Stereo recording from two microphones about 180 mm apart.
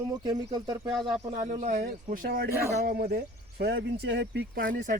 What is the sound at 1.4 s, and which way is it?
Speech, 40° right (ahead or behind).